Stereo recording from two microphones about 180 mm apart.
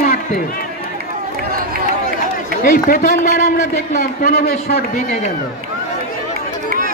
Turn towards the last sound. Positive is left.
turn(degrees=60)  # may be behind; listen again after turning